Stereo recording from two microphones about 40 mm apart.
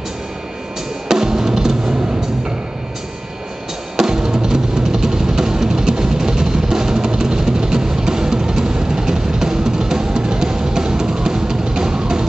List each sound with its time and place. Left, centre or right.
1.0 s drum: centre
3.9 s music: centre